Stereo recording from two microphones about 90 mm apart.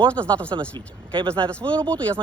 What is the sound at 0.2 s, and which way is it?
Speech, 60° right (ahead or behind).